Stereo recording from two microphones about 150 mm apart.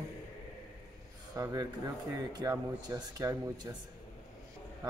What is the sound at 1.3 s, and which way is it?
Speech, 20° right (ahead or behind).